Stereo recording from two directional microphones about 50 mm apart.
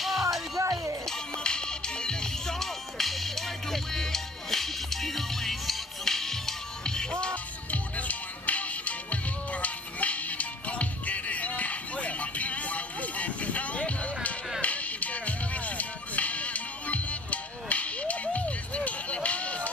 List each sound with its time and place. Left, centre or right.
0.0 s music: centre
0.6 s music: right
1.0 s music: centre
7.7 s music: left